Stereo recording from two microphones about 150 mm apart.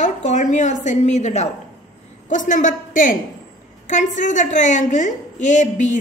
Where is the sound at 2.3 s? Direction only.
60° left (ahead or behind).